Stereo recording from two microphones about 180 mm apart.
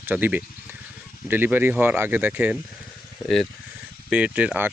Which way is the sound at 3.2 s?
20° left (ahead or behind).